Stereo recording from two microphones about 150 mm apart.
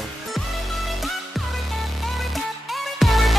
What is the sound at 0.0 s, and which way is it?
Music, centre (ahead or behind).